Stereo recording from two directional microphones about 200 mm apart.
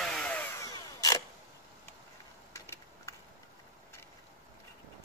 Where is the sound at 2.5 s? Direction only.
15° left (ahead or behind).